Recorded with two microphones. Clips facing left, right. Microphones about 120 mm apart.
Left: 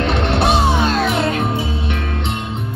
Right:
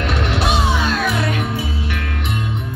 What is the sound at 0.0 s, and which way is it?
Music, 25° left (ahead or behind).